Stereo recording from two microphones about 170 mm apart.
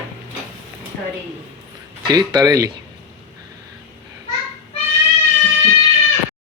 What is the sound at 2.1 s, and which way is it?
Speech, 20° right (ahead or behind).